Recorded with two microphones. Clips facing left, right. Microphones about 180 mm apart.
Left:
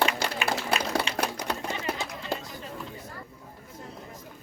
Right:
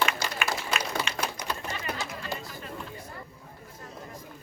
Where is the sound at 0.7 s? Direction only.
65° left (ahead or behind).